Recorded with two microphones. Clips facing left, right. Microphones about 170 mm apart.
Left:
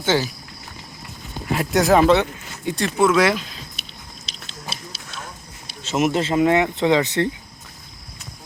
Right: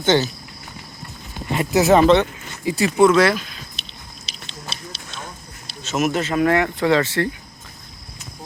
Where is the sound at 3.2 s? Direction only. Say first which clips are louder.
Right 1 dB; 20° left (ahead or behind).